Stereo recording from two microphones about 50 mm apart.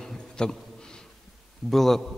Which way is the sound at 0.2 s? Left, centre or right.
Centre.